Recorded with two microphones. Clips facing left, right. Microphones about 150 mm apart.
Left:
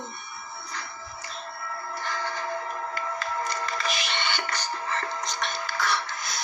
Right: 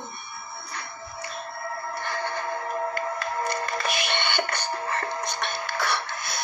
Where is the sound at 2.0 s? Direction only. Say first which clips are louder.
Right 1 dB; 55° right (ahead or behind).